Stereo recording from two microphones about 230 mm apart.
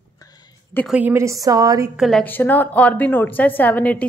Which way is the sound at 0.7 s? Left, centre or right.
Centre.